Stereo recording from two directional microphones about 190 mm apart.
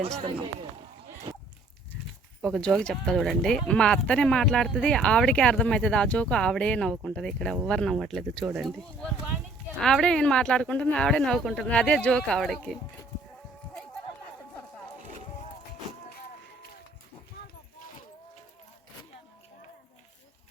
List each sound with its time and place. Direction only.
0.0 s speech: 30° right (ahead or behind)
1.3 s goat: 20° right (ahead or behind)
2.4 s speech: centre (ahead or behind)